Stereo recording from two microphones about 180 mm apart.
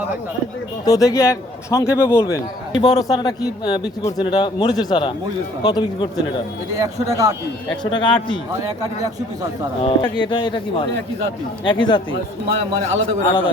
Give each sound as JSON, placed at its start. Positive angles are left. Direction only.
{"t": 0.9, "sound": "a man's voice", "side_deg": 20}
{"t": 6.7, "sound": "speech", "side_deg": -20}
{"t": 7.9, "sound": "a man's voice", "side_deg": 25}
{"t": 8.6, "sound": "speech", "side_deg": -20}
{"t": 9.8, "sound": "a man's voice", "side_deg": 25}
{"t": 13.2, "sound": "a man's voice", "side_deg": 30}